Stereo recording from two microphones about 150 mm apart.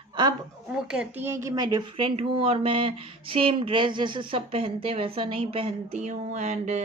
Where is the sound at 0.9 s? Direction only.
5° right (ahead or behind).